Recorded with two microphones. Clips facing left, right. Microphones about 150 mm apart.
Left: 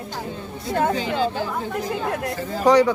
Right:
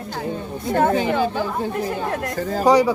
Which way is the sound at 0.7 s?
55° right (ahead or behind).